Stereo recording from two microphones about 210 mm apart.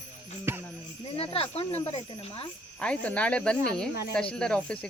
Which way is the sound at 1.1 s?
25° left (ahead or behind).